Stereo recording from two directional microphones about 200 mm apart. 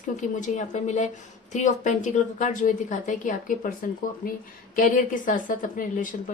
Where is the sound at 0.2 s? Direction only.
40° left (ahead or behind).